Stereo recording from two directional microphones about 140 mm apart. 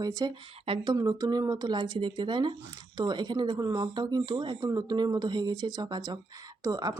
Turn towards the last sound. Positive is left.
turn(degrees=-30)  # may be behind; listen again after turning